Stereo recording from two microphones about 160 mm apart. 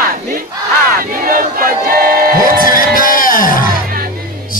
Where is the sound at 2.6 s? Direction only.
60° left (ahead or behind).